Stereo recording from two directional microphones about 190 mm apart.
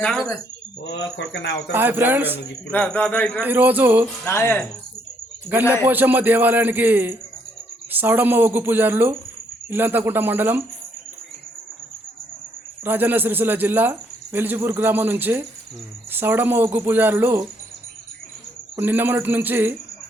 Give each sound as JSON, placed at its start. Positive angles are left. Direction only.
{"t": 0.0, "sound": "speech", "side_deg": 0}
{"t": 0.9, "sound": "speech", "side_deg": 65}
{"t": 1.7, "sound": "a man's voice", "side_deg": -10}
{"t": 2.7, "sound": "a sound", "side_deg": 10}
{"t": 3.4, "sound": "a man's voice", "side_deg": -10}
{"t": 4.3, "sound": "a sound", "side_deg": 10}
{"t": 5.7, "sound": "a man's voice", "side_deg": -10}
{"t": 12.8, "sound": "a man's voice", "side_deg": -10}
{"t": 18.8, "sound": "a man's voice", "side_deg": -10}